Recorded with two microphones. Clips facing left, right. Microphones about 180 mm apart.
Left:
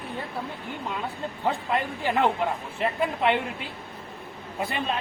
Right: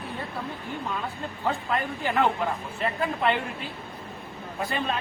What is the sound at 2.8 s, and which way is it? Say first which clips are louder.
Speech: left 2 dB; 15° left (ahead or behind).